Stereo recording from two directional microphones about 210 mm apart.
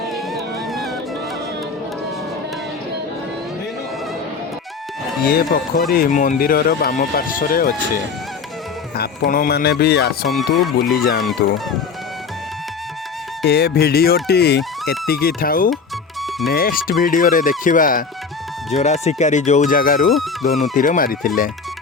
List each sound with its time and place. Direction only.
0.3 s music: centre (ahead or behind)
5.2 s speech: 45° left (ahead or behind)
9.0 s speech: 45° left (ahead or behind)
10.2 s speech: centre (ahead or behind)
13.4 s speech: 50° left (ahead or behind)